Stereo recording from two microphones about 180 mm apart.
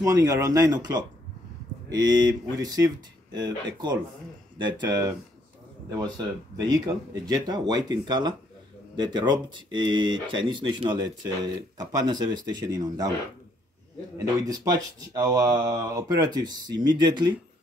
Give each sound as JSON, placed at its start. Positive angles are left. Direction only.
{"t": 0.0, "sound": "speech", "side_deg": -20}
{"t": 6.1, "sound": "speech", "side_deg": -20}
{"t": 14.1, "sound": "speech", "side_deg": -20}